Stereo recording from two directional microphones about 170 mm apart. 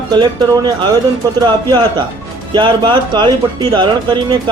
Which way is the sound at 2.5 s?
25° right (ahead or behind).